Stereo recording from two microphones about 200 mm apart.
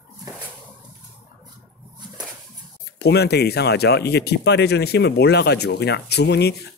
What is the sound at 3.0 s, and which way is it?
Speech, 55° left (ahead or behind).